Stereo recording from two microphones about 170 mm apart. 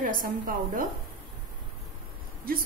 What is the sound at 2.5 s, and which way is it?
Speech, 60° right (ahead or behind).